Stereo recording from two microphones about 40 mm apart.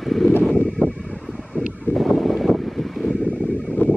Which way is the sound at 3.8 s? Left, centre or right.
Left.